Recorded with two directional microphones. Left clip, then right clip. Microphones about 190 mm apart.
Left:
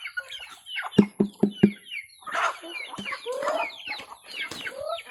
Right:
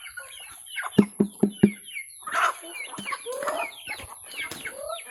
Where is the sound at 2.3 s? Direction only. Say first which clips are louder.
Right 2 dB; 35° right (ahead or behind).